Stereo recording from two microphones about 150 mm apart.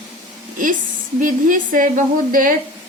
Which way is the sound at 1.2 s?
65° right (ahead or behind).